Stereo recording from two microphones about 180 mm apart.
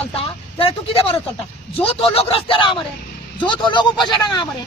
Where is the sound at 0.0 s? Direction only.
30° left (ahead or behind).